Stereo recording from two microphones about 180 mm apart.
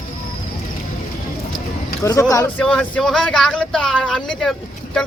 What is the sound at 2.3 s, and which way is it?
Speech, 15° left (ahead or behind).